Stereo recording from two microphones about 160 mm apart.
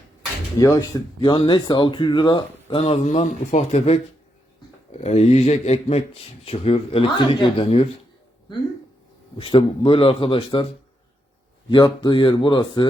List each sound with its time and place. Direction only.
0.6 s speech: 20° left (ahead or behind); by 7.9 s 35° left (ahead or behind)
9.4 s speech: 30° left (ahead or behind)
11.7 s speech: 30° left (ahead or behind)